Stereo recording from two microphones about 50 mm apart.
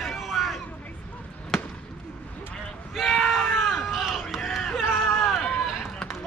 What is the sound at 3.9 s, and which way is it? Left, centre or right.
Crowd, centre.